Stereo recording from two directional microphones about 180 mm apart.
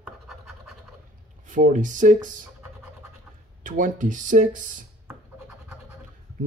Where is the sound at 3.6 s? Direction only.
45° right (ahead or behind).